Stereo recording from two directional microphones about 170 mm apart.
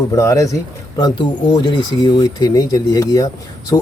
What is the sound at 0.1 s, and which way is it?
Speech, 20° left (ahead or behind).